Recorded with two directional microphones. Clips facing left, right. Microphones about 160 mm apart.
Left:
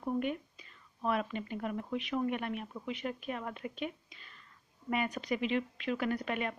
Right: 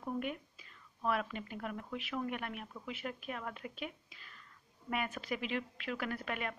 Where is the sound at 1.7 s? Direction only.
15° left (ahead or behind).